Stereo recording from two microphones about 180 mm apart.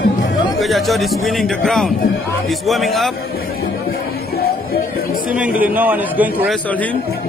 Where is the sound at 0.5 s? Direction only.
Centre (ahead or behind).